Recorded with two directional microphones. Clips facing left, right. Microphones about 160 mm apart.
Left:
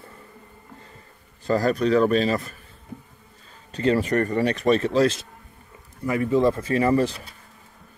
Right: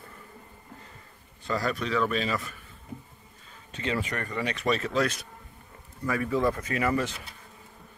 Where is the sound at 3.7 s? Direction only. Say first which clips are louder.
Left 10 dB; 40° left (ahead or behind).